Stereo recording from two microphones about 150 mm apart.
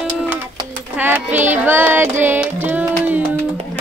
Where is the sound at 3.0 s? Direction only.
10° right (ahead or behind).